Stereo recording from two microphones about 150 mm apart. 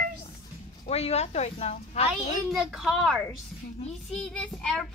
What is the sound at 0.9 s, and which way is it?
Speech, 45° left (ahead or behind).